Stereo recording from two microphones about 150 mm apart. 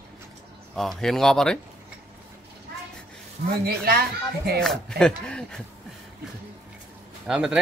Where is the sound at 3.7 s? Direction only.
90° right.